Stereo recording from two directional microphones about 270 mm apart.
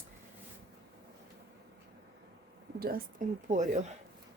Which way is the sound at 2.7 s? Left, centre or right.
Right.